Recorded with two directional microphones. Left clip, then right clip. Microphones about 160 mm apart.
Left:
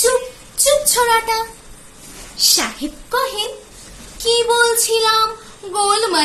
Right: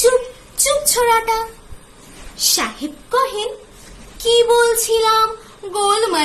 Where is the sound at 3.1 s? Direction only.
Centre (ahead or behind).